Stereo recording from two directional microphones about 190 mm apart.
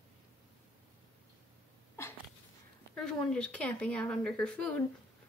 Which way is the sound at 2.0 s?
15° left (ahead or behind).